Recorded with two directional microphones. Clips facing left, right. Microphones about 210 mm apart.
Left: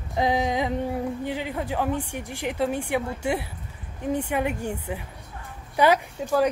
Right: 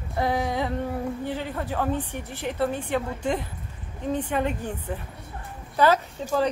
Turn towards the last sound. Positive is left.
turn(degrees=10)  # may be behind; listen again after turning